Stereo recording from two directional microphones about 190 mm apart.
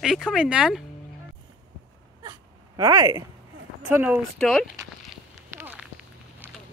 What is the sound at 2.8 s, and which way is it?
Speech, 20° right (ahead or behind).